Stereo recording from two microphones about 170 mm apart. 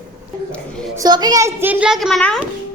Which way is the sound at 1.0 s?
25° right (ahead or behind).